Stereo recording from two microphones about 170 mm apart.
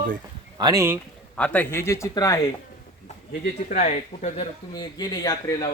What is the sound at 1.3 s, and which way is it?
A man's voice, 10° left (ahead or behind).